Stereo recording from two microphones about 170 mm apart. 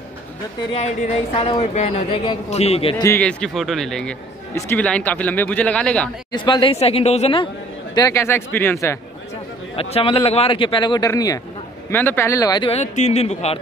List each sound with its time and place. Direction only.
0.7 s speech: 40° left (ahead or behind)
3.2 s speech: 5° left (ahead or behind)
6.3 s speech: 30° left (ahead or behind)
7.9 s speech: 20° left (ahead or behind)
9.8 s a man's voice: 35° left (ahead or behind)
12.7 s speech: 45° left (ahead or behind)